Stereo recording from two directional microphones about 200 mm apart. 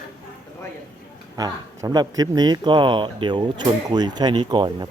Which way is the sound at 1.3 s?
20° right (ahead or behind).